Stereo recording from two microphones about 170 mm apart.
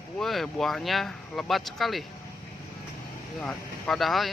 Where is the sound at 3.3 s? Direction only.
5° left (ahead or behind).